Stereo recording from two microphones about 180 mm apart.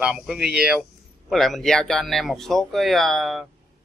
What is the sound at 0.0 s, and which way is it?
Speech, 5° right (ahead or behind).